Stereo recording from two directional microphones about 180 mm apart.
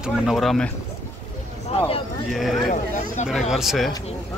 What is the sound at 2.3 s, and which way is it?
Speech, centre (ahead or behind).